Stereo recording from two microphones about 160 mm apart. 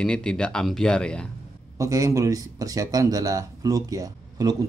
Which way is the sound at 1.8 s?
20° right (ahead or behind).